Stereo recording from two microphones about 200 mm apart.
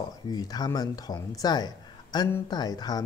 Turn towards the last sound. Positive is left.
turn(degrees=20)  # may be behind; listen again after turning